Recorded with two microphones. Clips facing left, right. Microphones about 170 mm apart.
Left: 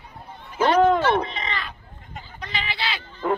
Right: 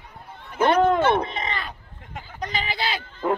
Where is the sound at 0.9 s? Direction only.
50° right (ahead or behind).